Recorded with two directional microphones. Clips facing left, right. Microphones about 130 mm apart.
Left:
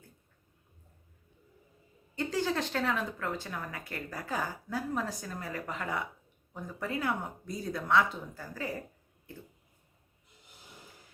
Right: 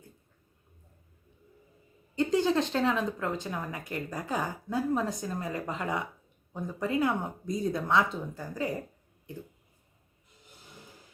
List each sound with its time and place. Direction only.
2.1 s speech: 20° right (ahead or behind)